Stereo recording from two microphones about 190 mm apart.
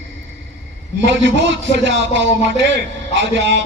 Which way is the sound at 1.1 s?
70° right (ahead or behind).